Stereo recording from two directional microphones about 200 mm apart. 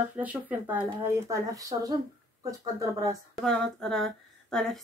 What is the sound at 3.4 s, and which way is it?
Speech, 5° left (ahead or behind).